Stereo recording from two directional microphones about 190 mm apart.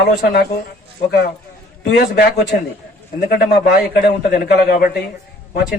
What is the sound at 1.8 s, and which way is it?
A man's voice, 60° left (ahead or behind).